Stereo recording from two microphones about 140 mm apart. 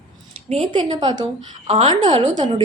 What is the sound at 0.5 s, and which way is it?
Speech, 35° right (ahead or behind).